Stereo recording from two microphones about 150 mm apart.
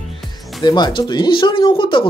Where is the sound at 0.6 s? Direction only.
30° left (ahead or behind).